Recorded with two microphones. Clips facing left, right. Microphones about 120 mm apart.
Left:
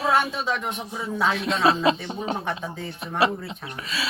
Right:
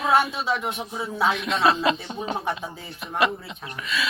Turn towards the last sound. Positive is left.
turn(degrees=35)  # may be behind; listen again after turning